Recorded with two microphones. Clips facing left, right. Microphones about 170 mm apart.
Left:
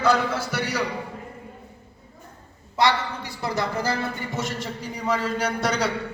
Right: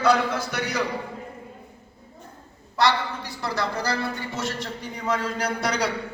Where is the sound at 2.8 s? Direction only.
15° left (ahead or behind).